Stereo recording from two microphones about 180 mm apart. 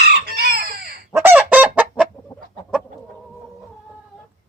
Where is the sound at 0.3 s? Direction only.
60° right (ahead or behind).